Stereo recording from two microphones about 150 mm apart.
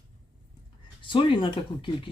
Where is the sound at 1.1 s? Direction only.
35° left (ahead or behind).